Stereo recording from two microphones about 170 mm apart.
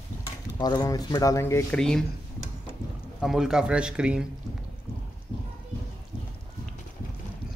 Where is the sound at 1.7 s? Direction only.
5° left (ahead or behind).